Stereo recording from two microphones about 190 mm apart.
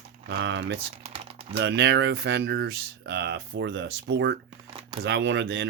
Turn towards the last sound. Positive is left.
turn(degrees=-70)  # may be behind; listen again after turning